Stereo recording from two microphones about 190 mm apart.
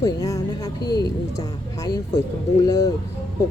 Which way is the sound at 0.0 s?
20° left (ahead or behind).